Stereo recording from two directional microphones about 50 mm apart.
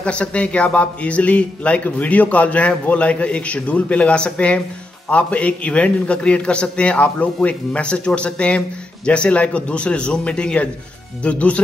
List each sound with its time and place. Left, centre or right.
0.0 s speech: left